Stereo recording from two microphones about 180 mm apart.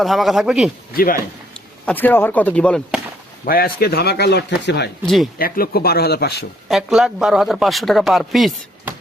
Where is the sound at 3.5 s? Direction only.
55° left (ahead or behind).